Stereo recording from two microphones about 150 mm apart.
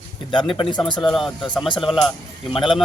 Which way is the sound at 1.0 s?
Centre (ahead or behind).